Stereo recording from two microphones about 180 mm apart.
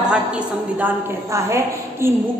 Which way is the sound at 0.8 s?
15° right (ahead or behind).